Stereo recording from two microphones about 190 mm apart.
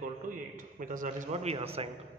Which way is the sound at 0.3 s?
45° right (ahead or behind).